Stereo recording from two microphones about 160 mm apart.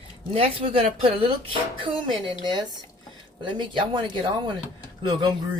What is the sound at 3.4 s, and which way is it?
Speech, 30° right (ahead or behind).